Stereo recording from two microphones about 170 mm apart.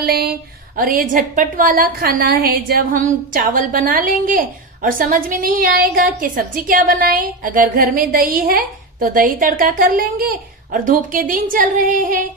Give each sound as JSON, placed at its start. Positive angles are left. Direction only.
{"t": 0.0, "sound": "a woman's voice", "side_deg": -65}